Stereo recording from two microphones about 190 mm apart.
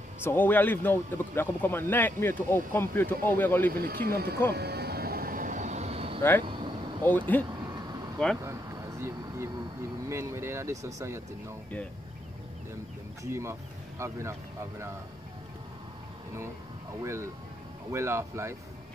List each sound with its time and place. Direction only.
0.2 s speech: 10° left (ahead or behind)
3.7 s speech: 50° right (ahead or behind)
4.5 s vehicle: 60° right (ahead or behind); by 6.1 s 30° right (ahead or behind)
7.0 s speech: 10° left (ahead or behind)
7.6 s vehicle: 20° right (ahead or behind)
8.2 s speech: 5° left (ahead or behind)
10.0 s speech: 15° right (ahead or behind)
13.2 s speech: 15° right (ahead or behind)
17.0 s speech: 15° right (ahead or behind)